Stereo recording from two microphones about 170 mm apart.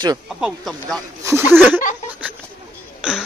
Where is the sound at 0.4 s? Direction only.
Centre (ahead or behind).